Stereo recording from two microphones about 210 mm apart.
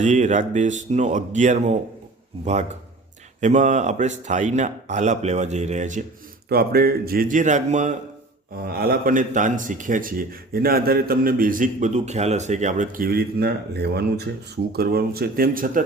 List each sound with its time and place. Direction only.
0.0 s speech: 35° right (ahead or behind)
6.5 s speech: 45° right (ahead or behind)
8.6 s speech: 45° right (ahead or behind)